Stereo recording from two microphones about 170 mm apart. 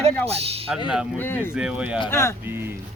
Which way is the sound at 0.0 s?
35° right (ahead or behind).